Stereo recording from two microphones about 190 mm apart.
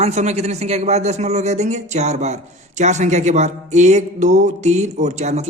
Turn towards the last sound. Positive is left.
turn(degrees=-35)  # may be behind; listen again after turning